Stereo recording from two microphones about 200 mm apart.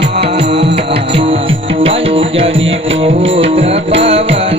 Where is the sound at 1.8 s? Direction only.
25° right (ahead or behind).